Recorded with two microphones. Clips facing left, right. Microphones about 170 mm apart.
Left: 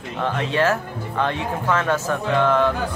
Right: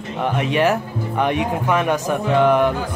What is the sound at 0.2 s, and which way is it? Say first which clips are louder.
Speech: right 3 dB; 15° right (ahead or behind).